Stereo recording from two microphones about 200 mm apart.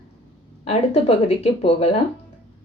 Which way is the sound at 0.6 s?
30° left (ahead or behind).